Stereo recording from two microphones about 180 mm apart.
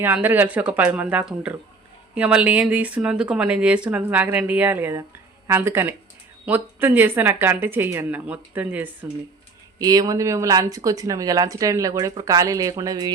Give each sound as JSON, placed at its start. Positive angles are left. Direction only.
{"t": 0.0, "sound": "speech", "side_deg": -10}
{"t": 9.7, "sound": "speech", "side_deg": -20}